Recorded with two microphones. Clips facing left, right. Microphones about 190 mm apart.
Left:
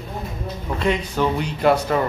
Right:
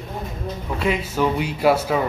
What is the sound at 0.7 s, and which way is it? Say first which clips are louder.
Speech: left 1 dB; 5° right (ahead or behind).